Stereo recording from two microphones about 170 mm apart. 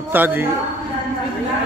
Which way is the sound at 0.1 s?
10° right (ahead or behind).